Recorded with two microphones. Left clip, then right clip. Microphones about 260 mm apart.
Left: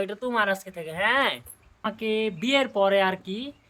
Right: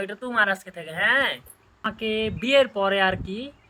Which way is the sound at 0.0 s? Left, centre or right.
Centre.